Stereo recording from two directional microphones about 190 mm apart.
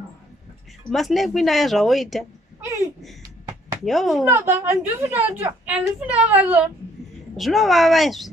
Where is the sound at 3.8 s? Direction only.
Centre (ahead or behind).